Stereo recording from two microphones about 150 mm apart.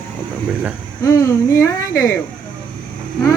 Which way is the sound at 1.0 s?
20° left (ahead or behind).